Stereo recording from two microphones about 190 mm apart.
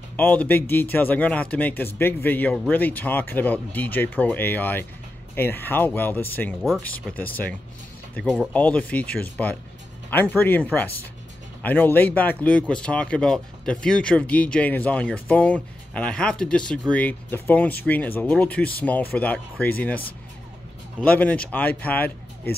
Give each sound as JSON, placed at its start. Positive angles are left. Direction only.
{"t": 0.1, "sound": "speech", "side_deg": 10}
{"t": 6.6, "sound": "speech", "side_deg": 0}
{"t": 8.5, "sound": "speech", "side_deg": 10}
{"t": 21.0, "sound": "speech", "side_deg": 10}